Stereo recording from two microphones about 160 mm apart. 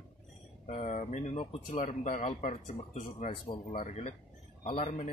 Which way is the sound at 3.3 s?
30° left (ahead or behind).